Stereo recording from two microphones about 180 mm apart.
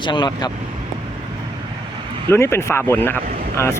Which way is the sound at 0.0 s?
25° left (ahead or behind).